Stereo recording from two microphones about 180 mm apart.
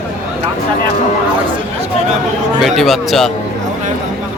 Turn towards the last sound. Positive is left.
turn(degrees=0)  # may be behind; listen again after turning